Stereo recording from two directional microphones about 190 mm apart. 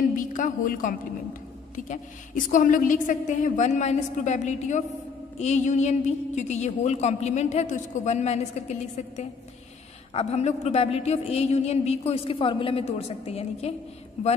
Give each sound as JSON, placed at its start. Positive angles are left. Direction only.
{"t": 0.1, "sound": "a woman's voice", "side_deg": 45}